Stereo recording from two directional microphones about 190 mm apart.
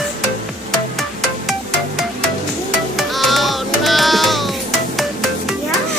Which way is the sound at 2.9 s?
Centre (ahead or behind).